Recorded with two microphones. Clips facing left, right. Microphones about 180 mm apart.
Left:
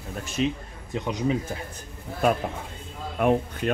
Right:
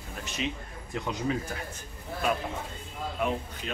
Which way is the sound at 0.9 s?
20° left (ahead or behind).